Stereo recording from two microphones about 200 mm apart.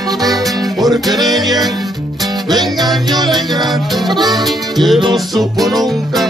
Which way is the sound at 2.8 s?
Centre (ahead or behind).